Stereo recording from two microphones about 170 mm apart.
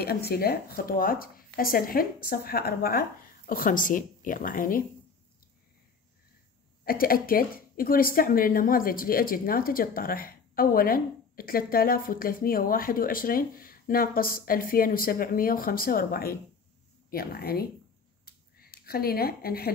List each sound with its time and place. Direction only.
0.0 s speech: 65° left (ahead or behind)
6.8 s speech: 60° left (ahead or behind)
18.2 s a sound: 65° left (ahead or behind)